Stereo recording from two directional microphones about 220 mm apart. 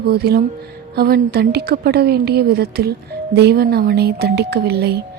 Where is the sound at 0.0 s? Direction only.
45° right (ahead or behind).